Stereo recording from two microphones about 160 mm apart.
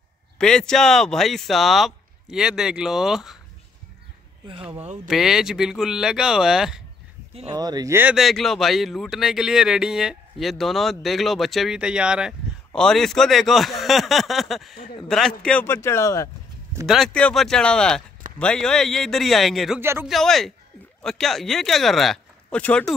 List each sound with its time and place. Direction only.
0.4 s speech: 5° left (ahead or behind)
4.5 s speech: 35° right (ahead or behind)
5.0 s speech: 5° right (ahead or behind)
7.5 s speech: 25° right (ahead or behind); by 15.6 s 5° left (ahead or behind)
15.6 s speech: 15° left (ahead or behind)
16.8 s speech: centre (ahead or behind)
19.8 s speech: 15° right (ahead or behind)
20.1 s speech: centre (ahead or behind)